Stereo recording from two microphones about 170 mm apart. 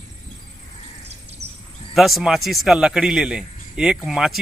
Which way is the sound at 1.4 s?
40° right (ahead or behind).